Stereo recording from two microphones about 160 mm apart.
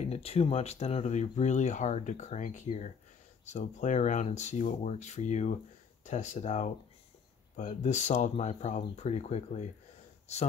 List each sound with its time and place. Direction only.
0.0 s speech: 40° left (ahead or behind)